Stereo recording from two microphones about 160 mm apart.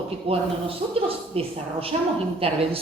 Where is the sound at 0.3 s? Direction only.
35° right (ahead or behind).